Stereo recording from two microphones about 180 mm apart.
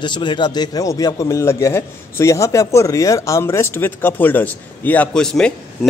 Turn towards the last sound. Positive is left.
turn(degrees=5)  # may be behind; listen again after turning